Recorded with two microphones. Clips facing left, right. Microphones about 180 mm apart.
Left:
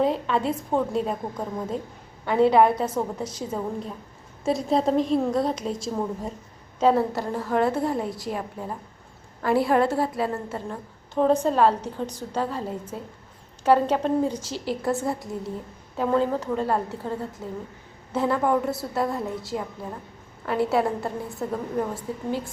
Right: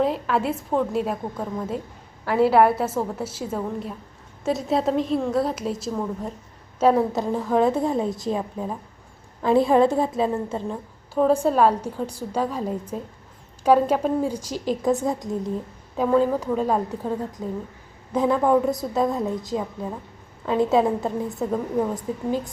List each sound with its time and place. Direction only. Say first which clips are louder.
0.0 s a woman's voice: right 1 dB; 5° right (ahead or behind)